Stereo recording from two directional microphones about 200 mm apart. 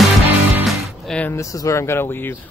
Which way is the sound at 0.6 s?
Centre (ahead or behind).